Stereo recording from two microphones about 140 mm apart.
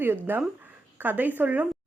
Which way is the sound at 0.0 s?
15° right (ahead or behind).